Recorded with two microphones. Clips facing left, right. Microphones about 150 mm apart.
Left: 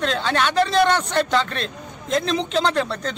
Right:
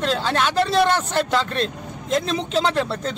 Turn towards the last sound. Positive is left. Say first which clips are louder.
# even
turn(degrees=-5)  # may be behind; listen again after turning